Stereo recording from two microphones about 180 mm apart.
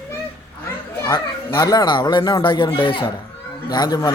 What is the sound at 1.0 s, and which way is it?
A child's voice, 20° left (ahead or behind).